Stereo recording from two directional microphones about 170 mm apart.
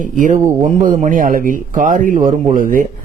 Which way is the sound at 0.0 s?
50° right (ahead or behind).